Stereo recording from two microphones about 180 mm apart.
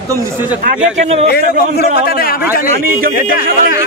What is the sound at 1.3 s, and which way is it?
A man's voice, 60° left (ahead or behind).